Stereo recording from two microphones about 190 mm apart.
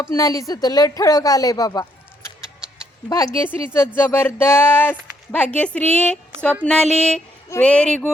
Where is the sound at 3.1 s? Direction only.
15° left (ahead or behind).